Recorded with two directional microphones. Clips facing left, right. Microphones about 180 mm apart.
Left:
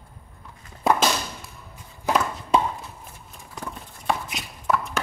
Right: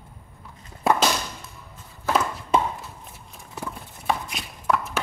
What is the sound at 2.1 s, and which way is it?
Walk, 15° left (ahead or behind).